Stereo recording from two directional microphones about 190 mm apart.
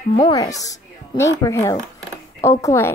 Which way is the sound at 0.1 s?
20° left (ahead or behind).